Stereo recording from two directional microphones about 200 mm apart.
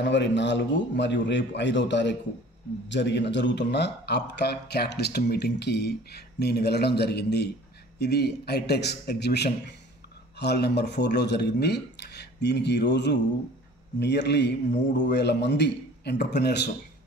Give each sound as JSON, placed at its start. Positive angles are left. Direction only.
{"t": 0.0, "sound": "speech", "side_deg": 60}